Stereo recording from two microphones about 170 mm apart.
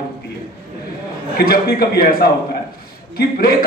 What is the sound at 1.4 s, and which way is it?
A man's voice, 65° left (ahead or behind).